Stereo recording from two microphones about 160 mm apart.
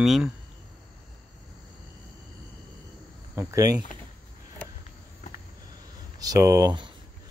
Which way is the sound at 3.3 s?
20° right (ahead or behind).